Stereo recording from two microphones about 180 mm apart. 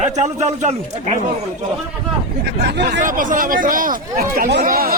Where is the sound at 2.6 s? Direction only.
70° right (ahead or behind).